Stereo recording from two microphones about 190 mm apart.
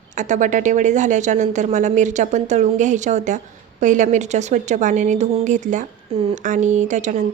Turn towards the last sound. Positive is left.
turn(degrees=-40)  # may be behind; listen again after turning